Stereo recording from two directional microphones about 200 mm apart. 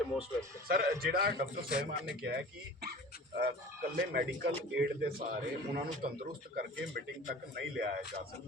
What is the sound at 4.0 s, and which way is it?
Speech, 50° right (ahead or behind).